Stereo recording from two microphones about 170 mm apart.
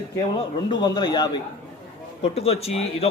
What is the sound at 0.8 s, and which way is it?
Speech, 25° left (ahead or behind).